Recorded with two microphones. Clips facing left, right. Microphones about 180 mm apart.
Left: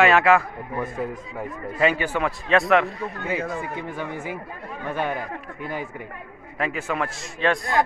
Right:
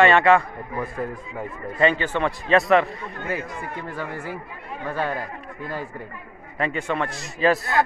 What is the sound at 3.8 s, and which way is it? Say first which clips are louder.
A woman's voice: left 1 dB; 20° left (ahead or behind).